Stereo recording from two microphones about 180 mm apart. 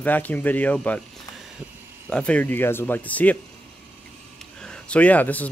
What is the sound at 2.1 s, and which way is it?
Speech, 5° left (ahead or behind).